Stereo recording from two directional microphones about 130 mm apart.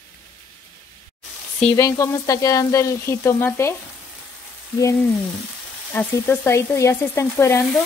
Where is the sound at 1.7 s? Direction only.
25° left (ahead or behind).